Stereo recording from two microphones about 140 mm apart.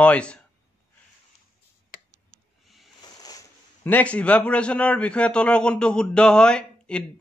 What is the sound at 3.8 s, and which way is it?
A man's voice, 10° left (ahead or behind).